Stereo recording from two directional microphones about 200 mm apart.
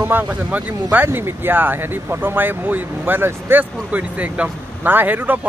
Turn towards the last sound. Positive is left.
turn(degrees=-10)  # may be behind; listen again after turning